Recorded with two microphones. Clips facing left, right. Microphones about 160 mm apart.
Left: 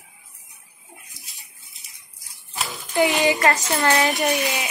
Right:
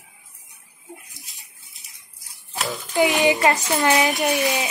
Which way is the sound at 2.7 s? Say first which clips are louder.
Right 1 dB; 20° right (ahead or behind).